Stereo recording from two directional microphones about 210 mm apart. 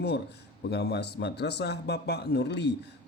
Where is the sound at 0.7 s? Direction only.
50° left (ahead or behind).